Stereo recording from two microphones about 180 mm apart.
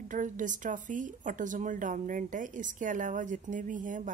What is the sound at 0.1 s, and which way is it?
Speech, 45° right (ahead or behind).